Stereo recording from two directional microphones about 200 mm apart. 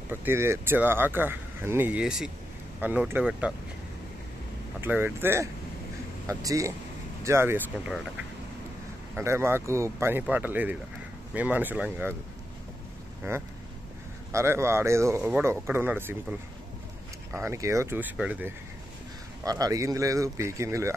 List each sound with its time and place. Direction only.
0.1 s speech: 10° right (ahead or behind)
4.7 s speech: 10° right (ahead or behind)
9.1 s speech: 15° right (ahead or behind)
14.3 s speech: 15° right (ahead or behind)
19.4 s speech: 15° right (ahead or behind)